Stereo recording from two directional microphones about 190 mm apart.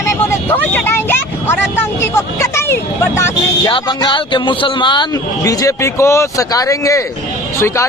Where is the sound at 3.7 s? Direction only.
25° left (ahead or behind).